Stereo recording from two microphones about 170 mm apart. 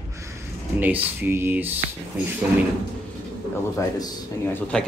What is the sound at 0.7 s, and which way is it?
Speech, 10° right (ahead or behind).